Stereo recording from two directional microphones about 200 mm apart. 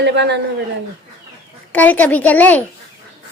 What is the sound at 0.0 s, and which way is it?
Speech, 60° right (ahead or behind).